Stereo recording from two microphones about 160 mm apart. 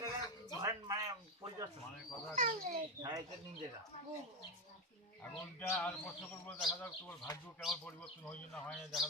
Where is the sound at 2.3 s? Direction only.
55° right (ahead or behind).